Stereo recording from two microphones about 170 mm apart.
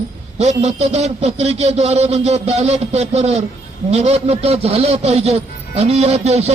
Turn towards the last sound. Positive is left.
turn(degrees=-40)  # may be behind; listen again after turning